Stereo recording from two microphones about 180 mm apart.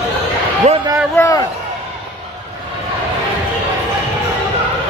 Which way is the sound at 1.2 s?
20° left (ahead or behind).